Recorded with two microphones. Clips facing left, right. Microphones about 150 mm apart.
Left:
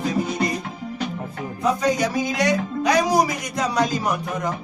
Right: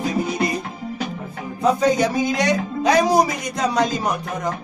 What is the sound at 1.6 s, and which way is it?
Speech, 25° right (ahead or behind).